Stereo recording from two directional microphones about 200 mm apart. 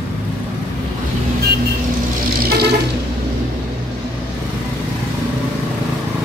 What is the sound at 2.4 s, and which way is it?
Vehicle, 50° right (ahead or behind).